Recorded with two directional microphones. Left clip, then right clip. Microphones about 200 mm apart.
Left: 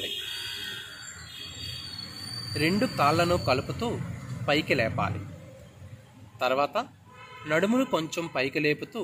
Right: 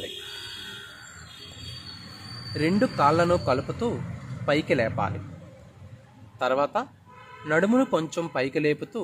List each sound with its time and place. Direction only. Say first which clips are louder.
2.5 s speech: right 2 dB; 40° right (ahead or behind)
6.4 s speech: right 2 dB; 40° right (ahead or behind)